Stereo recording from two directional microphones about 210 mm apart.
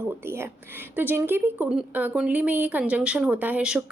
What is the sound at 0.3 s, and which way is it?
Speech, 10° right (ahead or behind).